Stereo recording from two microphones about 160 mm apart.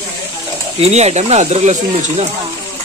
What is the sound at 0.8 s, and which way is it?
Speech, 45° right (ahead or behind).